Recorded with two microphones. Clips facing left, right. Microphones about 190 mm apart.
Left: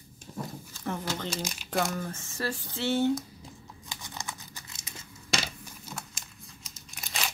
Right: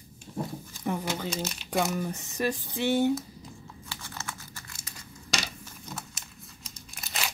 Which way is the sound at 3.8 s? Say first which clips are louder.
Even; 15° left (ahead or behind).